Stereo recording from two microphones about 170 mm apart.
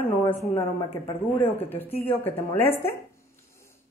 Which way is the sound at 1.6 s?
10° left (ahead or behind).